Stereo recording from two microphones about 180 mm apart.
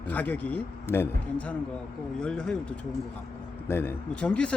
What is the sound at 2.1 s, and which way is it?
Speech, 5° left (ahead or behind).